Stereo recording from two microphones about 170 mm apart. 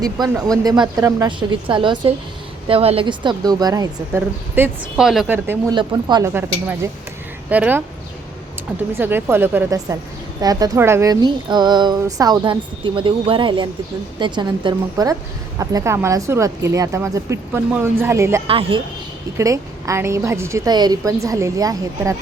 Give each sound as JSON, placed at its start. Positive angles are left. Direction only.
{"t": 0.0, "sound": "speech", "side_deg": -20}
{"t": 5.7, "sound": "speech", "side_deg": -25}
{"t": 6.3, "sound": "a woman's voice", "side_deg": -15}
{"t": 9.0, "sound": "a woman's voice", "side_deg": -15}
{"t": 18.4, "sound": "a woman's voice", "side_deg": -30}
{"t": 19.4, "sound": "a woman's voice", "side_deg": -20}